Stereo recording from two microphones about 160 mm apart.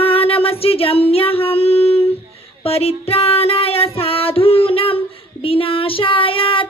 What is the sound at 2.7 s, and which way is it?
Music, 40° left (ahead or behind).